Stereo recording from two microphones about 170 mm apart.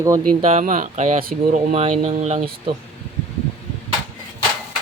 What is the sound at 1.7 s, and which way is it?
Speech, 40° right (ahead or behind).